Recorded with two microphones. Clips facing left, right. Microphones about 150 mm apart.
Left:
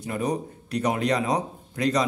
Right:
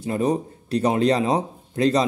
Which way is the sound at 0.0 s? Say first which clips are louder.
Right 5 dB; 30° right (ahead or behind).